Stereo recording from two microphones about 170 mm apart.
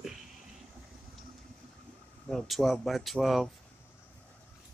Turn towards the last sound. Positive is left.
turn(degrees=0)  # may be behind; listen again after turning